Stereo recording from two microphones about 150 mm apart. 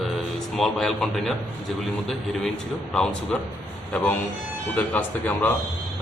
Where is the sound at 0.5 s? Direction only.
Centre (ahead or behind).